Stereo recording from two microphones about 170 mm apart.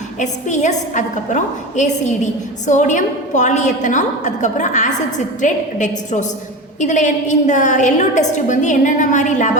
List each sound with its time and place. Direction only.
0.2 s a woman's voice: 45° left (ahead or behind)